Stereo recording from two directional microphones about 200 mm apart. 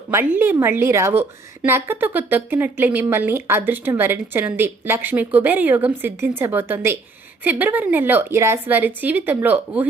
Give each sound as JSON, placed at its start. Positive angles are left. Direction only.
{"t": 0.1, "sound": "speech", "side_deg": -10}